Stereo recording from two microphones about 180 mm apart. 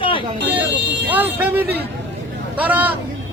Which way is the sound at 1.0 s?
10° right (ahead or behind).